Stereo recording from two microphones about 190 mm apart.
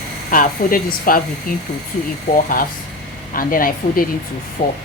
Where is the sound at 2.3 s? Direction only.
45° left (ahead or behind).